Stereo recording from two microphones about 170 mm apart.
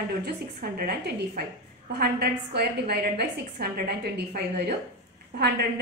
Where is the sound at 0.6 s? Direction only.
65° right (ahead or behind).